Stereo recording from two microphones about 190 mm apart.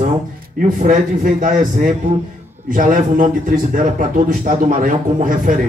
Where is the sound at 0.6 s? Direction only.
45° right (ahead or behind).